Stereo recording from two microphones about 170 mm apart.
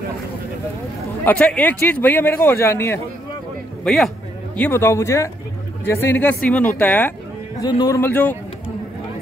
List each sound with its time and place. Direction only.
1.2 s a man's voice: 10° left (ahead or behind)
3.8 s a man's voice: centre (ahead or behind)
4.6 s a man's voice: 15° left (ahead or behind)
7.6 s a man's voice: 20° left (ahead or behind)